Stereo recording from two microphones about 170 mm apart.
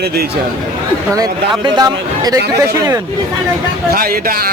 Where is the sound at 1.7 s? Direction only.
25° right (ahead or behind).